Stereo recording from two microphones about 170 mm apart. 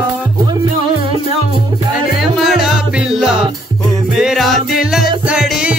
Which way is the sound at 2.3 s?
Centre (ahead or behind).